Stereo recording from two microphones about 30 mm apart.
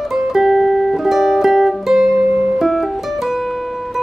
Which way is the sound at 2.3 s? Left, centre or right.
Right.